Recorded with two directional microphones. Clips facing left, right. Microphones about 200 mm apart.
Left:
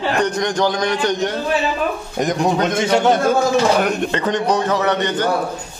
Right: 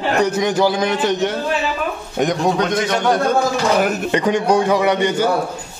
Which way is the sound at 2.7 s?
25° left (ahead or behind).